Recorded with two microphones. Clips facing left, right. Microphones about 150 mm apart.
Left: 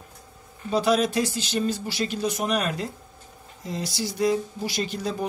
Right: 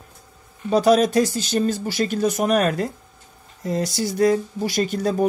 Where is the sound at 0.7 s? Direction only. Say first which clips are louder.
Right 6 dB; 45° right (ahead or behind).